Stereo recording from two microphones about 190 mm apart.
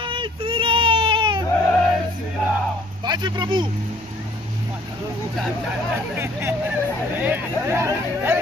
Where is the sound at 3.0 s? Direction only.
25° right (ahead or behind).